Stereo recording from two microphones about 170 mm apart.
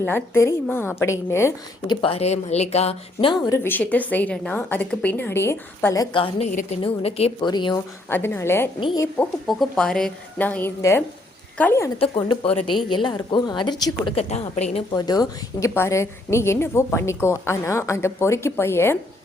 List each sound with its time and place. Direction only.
0.0 s a woman's voice: 15° left (ahead or behind)
1.9 s speech: 30° left (ahead or behind)
3.5 s a woman's voice: 15° left (ahead or behind)
6.1 s speech: 30° left (ahead or behind)
6.5 s a woman's voice: 50° left (ahead or behind)
6.8 s speech: 35° left (ahead or behind)
8.1 s a woman's voice: 15° left (ahead or behind)
9.1 s a woman's voice: 5° left (ahead or behind)
11.9 s a woman's voice: 30° left (ahead or behind)
14.2 s speech: 40° left (ahead or behind)
14.9 s a woman's voice: 25° left (ahead or behind)